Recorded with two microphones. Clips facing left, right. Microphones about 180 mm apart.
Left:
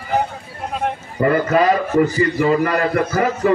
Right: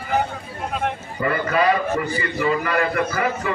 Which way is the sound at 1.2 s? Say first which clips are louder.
Left 4 dB; 45° left (ahead or behind).